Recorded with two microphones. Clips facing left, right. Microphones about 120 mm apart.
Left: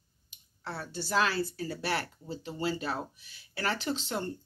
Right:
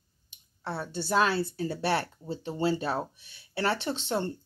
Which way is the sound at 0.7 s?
25° right (ahead or behind).